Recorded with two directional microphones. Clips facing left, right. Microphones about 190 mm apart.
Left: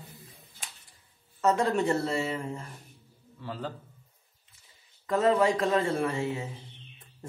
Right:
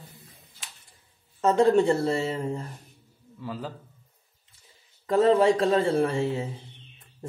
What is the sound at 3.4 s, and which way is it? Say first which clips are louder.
Speech: right 3 dB; 10° right (ahead or behind).